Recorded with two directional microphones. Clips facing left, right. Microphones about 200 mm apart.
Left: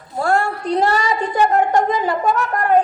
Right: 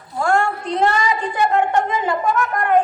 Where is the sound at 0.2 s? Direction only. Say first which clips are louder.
Even; 35° left (ahead or behind).